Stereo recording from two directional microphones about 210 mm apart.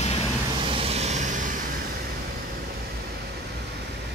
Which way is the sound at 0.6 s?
25° right (ahead or behind).